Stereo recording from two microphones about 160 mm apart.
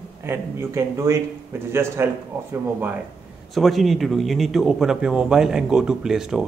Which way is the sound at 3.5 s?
Centre (ahead or behind).